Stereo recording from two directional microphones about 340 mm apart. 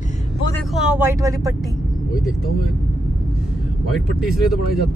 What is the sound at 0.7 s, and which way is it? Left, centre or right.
Speech, centre.